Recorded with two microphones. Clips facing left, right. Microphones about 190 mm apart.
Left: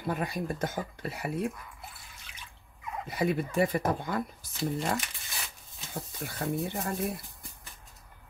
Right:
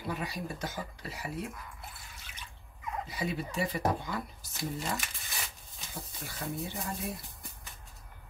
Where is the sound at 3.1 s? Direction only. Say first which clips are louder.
Left 9 dB; 55° left (ahead or behind).